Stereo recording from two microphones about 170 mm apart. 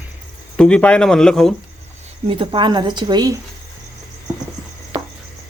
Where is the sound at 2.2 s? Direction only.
30° right (ahead or behind).